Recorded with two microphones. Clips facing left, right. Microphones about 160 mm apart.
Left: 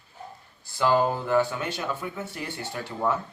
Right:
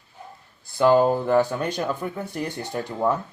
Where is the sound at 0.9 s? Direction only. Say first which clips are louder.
Right 5 dB; 45° right (ahead or behind).